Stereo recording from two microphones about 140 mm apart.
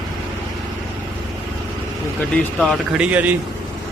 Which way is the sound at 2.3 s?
5° left (ahead or behind).